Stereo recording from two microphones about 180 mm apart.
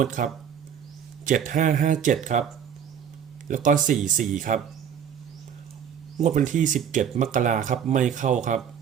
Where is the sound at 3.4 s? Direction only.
45° right (ahead or behind).